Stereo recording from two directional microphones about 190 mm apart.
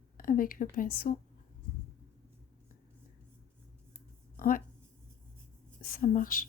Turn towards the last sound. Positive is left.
turn(degrees=50)  # may be behind; listen again after turning